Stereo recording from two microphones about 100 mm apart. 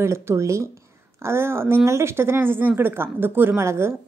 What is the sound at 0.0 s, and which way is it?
Speech, 25° right (ahead or behind).